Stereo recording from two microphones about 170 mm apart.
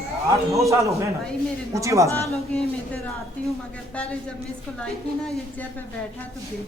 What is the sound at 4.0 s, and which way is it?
A woman's voice, 5° left (ahead or behind).